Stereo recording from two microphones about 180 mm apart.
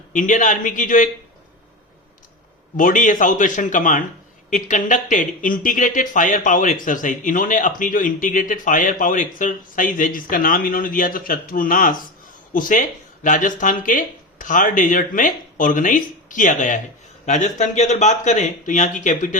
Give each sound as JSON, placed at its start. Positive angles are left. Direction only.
{"t": 0.1, "sound": "speech", "side_deg": 45}
{"t": 2.7, "sound": "speech", "side_deg": 45}